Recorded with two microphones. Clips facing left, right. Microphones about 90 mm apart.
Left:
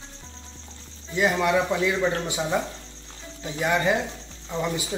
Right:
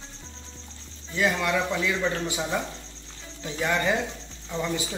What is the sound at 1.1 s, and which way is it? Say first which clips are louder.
Speech: left 3 dB; 20° left (ahead or behind).